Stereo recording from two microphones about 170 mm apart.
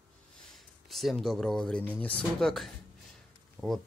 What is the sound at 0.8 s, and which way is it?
Speech, centre (ahead or behind).